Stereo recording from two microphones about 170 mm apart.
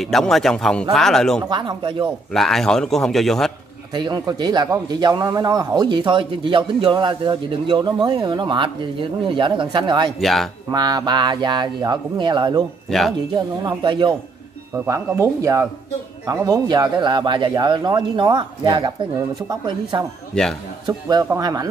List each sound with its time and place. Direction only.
0.0 s a man's voice: centre (ahead or behind)
1.4 s a man's voice: 25° right (ahead or behind)
2.3 s a man's voice: centre (ahead or behind)
3.9 s a man's voice: 25° right (ahead or behind)
10.2 s a man's voice: centre (ahead or behind)
10.7 s a man's voice: 25° right (ahead or behind)
13.7 s a man's voice: 25° right (ahead or behind)
14.9 s a man's voice: 15° right (ahead or behind)